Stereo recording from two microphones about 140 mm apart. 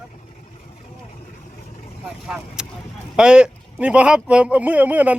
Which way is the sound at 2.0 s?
5° right (ahead or behind).